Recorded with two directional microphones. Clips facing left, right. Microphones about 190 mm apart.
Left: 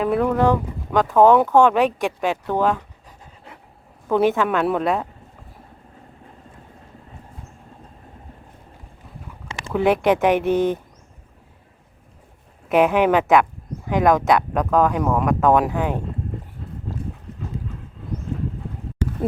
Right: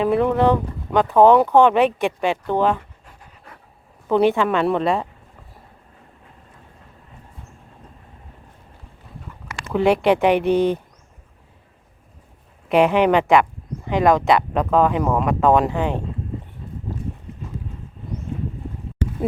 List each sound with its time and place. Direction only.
0.0 s speech: centre (ahead or behind)
4.1 s speech: 5° left (ahead or behind)
9.5 s a sound: 25° left (ahead or behind)
9.7 s speech: centre (ahead or behind)
12.6 s speech: centre (ahead or behind)